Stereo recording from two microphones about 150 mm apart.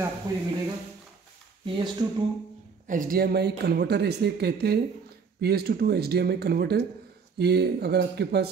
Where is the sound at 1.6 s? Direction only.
30° right (ahead or behind).